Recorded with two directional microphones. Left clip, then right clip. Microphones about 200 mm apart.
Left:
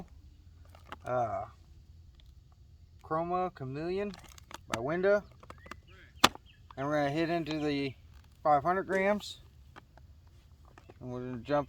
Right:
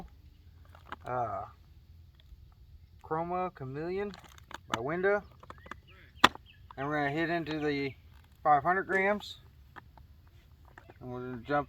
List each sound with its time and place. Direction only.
0.7 s rowboat: 5° left (ahead or behind)
1.0 s speech: 35° left (ahead or behind)
3.1 s speech: 40° left (ahead or behind)
4.1 s a sound: 5° left (ahead or behind)
4.8 s speech: 40° left (ahead or behind)
5.4 s a sound: 10° left (ahead or behind)
6.1 s chop: 20° left (ahead or behind)
6.7 s speech: 45° left (ahead or behind)
11.0 s speech: 45° left (ahead or behind)